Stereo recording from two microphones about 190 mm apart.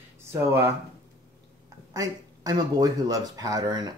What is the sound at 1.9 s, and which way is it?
Speech, 20° right (ahead or behind).